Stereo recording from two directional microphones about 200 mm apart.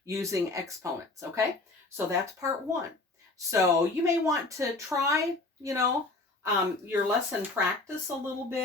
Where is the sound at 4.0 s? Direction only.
15° right (ahead or behind).